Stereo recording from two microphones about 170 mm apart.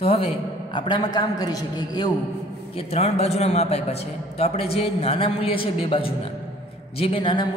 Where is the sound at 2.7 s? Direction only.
40° left (ahead or behind).